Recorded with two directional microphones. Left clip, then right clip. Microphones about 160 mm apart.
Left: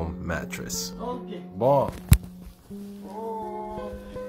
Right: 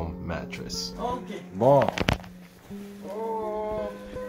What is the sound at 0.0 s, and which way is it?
Speech, 35° left (ahead or behind).